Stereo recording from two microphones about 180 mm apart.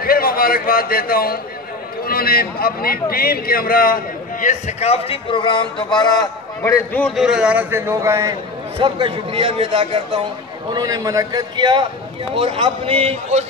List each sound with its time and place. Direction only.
0.0 s a man's voice: 55° left (ahead or behind); by 8.4 s 15° right (ahead or behind)
8.7 s a man's voice: 30° right (ahead or behind)